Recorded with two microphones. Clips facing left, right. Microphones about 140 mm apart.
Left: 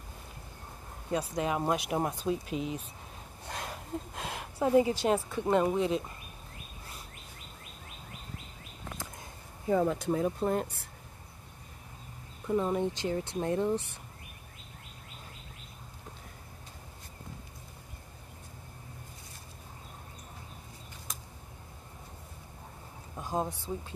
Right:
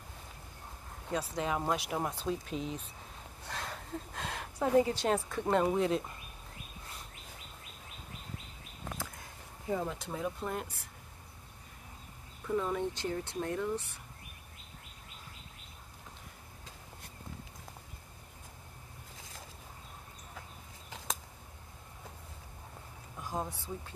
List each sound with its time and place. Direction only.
1.1 s a woman's voice: 15° left (ahead or behind)
9.7 s speech: 55° left (ahead or behind)
12.4 s speech: 25° left (ahead or behind)
23.1 s a sound: 25° left (ahead or behind)